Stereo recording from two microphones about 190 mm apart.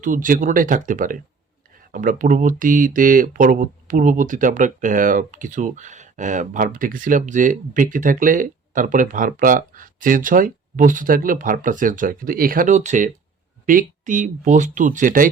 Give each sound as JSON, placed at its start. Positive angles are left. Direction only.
{"t": 0.0, "sound": "speech", "side_deg": -45}